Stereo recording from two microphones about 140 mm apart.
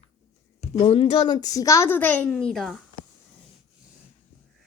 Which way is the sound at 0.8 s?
40° left (ahead or behind).